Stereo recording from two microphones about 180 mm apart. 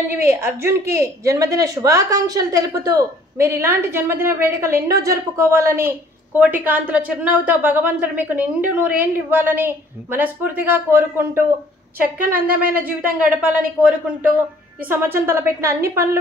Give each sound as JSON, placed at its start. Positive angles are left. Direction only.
{"t": 0.1, "sound": "a woman's voice", "side_deg": -15}
{"t": 12.7, "sound": "a woman's voice", "side_deg": -10}